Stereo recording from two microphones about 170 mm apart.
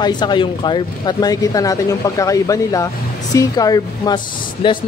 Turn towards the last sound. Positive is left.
turn(degrees=30)  # may be behind; listen again after turning